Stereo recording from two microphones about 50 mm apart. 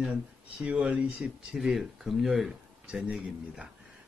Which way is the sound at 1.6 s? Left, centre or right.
Centre.